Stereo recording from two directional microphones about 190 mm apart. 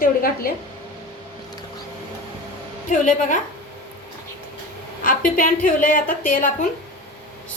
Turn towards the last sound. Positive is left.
turn(degrees=45)  # may be behind; listen again after turning